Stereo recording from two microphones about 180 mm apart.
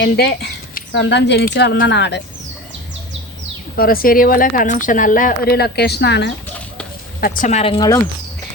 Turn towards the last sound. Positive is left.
turn(degrees=20)  # may be behind; listen again after turning